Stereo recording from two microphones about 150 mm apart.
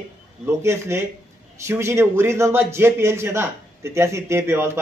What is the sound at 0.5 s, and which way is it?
Speech, 20° right (ahead or behind).